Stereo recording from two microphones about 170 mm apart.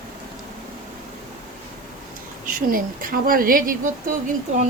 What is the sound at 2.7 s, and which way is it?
A woman's voice, 60° right (ahead or behind).